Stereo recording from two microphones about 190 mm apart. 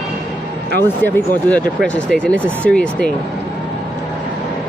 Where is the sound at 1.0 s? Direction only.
10° left (ahead or behind).